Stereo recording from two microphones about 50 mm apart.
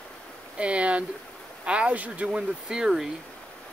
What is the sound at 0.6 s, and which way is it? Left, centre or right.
Speech, right.